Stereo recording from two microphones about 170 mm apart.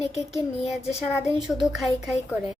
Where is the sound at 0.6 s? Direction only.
40° left (ahead or behind).